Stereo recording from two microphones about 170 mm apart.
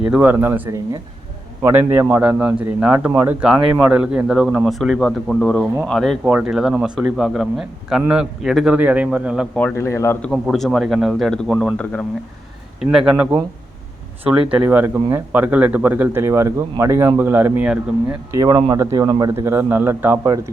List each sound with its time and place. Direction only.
0.1 s speech: 10° right (ahead or behind)
1.9 s speech: 15° right (ahead or behind)
9.6 s speech: 10° left (ahead or behind)
12.8 s speech: 5° right (ahead or behind)
18.3 s a man's voice: 20° right (ahead or behind)